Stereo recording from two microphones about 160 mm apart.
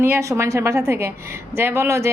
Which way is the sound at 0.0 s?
15° right (ahead or behind).